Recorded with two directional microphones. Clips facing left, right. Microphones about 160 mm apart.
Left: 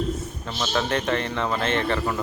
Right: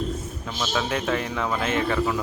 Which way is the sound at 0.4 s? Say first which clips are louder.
Left 1 dB; 5° right (ahead or behind).